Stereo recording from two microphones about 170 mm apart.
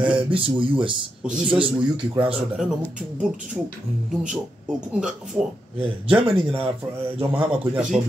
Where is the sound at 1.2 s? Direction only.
5° right (ahead or behind).